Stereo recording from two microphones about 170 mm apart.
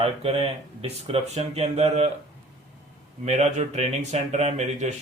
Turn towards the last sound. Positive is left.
turn(degrees=-40)  # may be behind; listen again after turning